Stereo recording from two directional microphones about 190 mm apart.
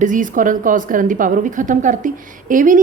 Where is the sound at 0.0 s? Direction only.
40° right (ahead or behind).